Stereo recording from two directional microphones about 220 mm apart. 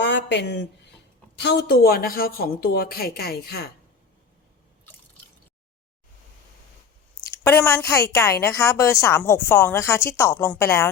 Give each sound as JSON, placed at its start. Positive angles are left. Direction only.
{"t": 0.0, "sound": "a sound", "side_deg": 50}
{"t": 1.4, "sound": "speech", "side_deg": 50}
{"t": 7.3, "sound": "a woman's voice", "side_deg": 10}